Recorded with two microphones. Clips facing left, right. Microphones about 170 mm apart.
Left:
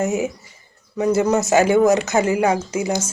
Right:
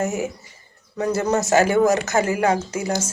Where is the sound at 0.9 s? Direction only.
10° left (ahead or behind).